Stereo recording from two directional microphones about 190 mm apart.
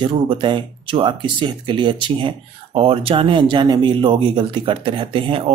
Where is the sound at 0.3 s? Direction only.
25° right (ahead or behind).